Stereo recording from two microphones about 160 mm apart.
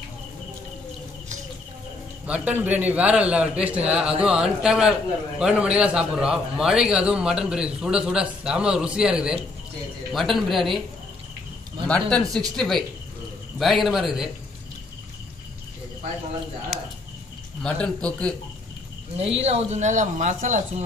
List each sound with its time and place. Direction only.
2.2 s a man's voice: 10° right (ahead or behind)
11.9 s a man's voice: 5° left (ahead or behind)
16.7 s a man's voice: centre (ahead or behind)
19.1 s speech: 40° right (ahead or behind)